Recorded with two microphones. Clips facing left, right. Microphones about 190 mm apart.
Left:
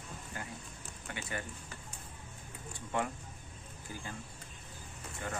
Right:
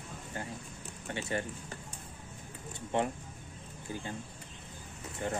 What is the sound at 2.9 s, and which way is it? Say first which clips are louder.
Speech: right 4 dB; 25° right (ahead or behind).